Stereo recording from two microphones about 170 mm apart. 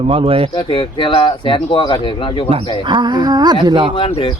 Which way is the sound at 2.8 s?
25° right (ahead or behind).